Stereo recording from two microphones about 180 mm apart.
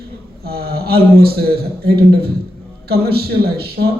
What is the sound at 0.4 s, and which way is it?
A man's voice, 60° right (ahead or behind).